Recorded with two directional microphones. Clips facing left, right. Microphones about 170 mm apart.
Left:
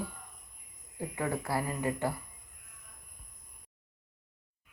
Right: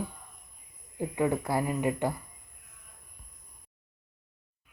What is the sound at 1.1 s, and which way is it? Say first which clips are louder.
Speech: right 5 dB; 20° right (ahead or behind).